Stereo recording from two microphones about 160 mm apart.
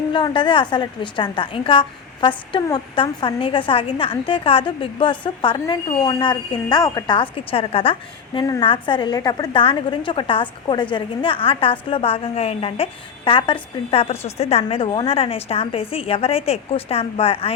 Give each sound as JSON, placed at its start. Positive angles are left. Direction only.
{"t": 0.1, "sound": "a woman's voice", "side_deg": 30}